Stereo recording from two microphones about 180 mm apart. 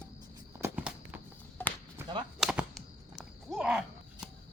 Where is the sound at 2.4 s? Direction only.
5° right (ahead or behind).